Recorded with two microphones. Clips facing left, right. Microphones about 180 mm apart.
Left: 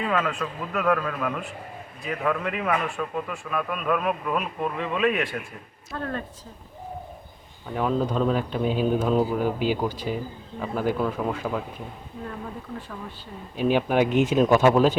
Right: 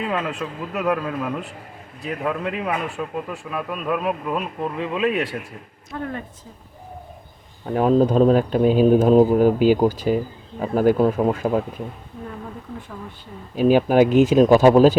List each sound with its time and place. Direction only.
0.1 s speech: 25° right (ahead or behind)
5.9 s speech: 15° right (ahead or behind)
7.6 s a man's voice: 45° right (ahead or behind)
13.6 s speech: 40° right (ahead or behind)